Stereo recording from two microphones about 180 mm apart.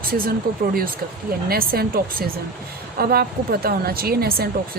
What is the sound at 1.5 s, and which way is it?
Speech, 55° right (ahead or behind).